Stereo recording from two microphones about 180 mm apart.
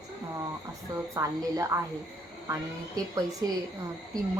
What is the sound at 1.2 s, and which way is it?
Speech, 20° right (ahead or behind).